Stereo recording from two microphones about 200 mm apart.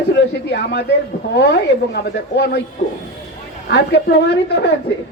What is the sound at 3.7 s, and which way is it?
Speech, 55° left (ahead or behind).